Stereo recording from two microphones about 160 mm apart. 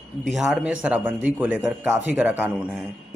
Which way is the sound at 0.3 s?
5° right (ahead or behind).